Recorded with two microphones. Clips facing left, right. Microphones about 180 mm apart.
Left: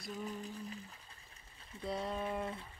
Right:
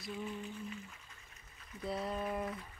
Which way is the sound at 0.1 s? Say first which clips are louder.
Right 1 dB; 40° left (ahead or behind).